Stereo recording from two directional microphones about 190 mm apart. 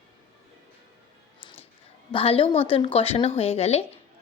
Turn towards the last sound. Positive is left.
turn(degrees=35)  # may be behind; listen again after turning